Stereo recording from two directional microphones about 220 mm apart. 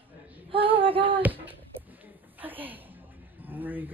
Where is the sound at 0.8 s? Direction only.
25° right (ahead or behind).